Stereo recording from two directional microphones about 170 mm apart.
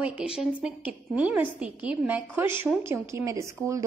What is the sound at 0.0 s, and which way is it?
A woman's voice, 5° right (ahead or behind).